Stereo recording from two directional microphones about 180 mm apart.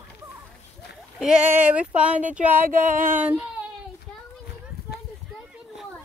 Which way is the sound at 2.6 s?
50° right (ahead or behind).